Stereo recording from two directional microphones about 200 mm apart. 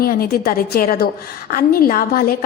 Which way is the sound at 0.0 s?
50° left (ahead or behind).